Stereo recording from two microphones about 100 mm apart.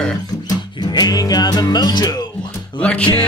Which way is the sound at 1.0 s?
40° left (ahead or behind).